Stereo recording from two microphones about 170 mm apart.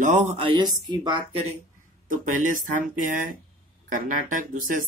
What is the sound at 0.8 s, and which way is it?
Speech, 25° right (ahead or behind).